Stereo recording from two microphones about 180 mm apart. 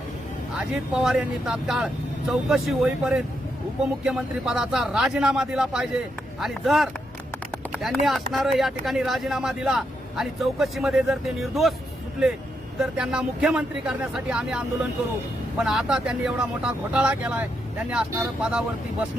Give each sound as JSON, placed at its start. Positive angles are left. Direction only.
{"t": 0.5, "sound": "speech", "side_deg": -5}
{"t": 12.8, "sound": "speech", "side_deg": -5}